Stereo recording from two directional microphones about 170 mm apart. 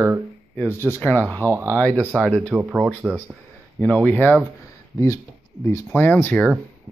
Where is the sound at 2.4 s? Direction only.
10° right (ahead or behind).